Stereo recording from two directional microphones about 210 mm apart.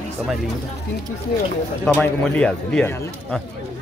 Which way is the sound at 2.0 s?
5° left (ahead or behind).